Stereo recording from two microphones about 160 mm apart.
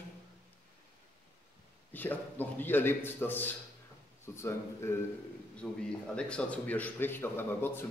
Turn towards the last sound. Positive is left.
turn(degrees=15)  # may be behind; listen again after turning